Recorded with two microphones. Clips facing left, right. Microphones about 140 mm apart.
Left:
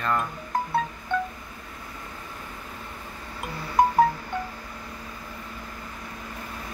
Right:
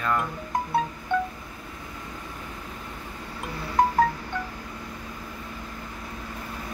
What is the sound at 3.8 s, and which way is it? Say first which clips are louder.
Wind chime: left 1 dB; 10° left (ahead or behind).